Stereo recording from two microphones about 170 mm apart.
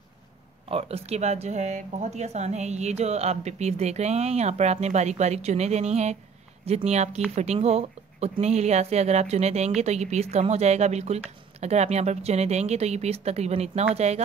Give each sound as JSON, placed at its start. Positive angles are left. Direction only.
{"t": 0.7, "sound": "speech", "side_deg": -35}